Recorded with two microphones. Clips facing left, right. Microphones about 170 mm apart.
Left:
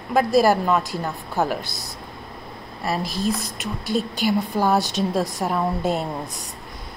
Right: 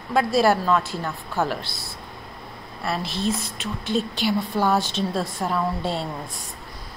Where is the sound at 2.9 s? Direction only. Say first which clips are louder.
Left 2 dB; 40° left (ahead or behind).